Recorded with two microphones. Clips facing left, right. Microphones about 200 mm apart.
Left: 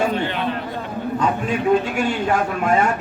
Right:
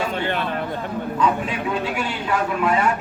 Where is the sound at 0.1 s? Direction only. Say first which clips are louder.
Left 1 dB; 50° right (ahead or behind).